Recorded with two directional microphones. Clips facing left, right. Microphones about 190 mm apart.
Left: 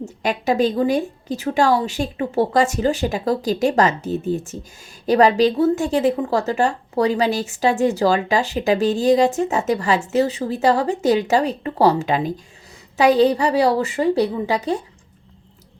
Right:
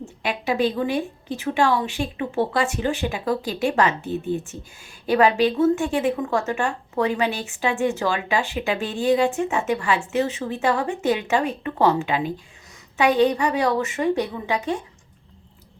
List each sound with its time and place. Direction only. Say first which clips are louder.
0.0 s a woman's voice: left 5 dB; 40° left (ahead or behind)